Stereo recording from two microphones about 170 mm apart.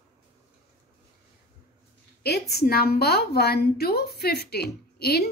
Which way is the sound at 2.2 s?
70° left (ahead or behind).